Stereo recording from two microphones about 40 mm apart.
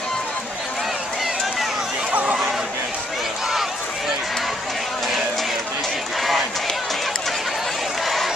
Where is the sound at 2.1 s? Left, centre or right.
Right.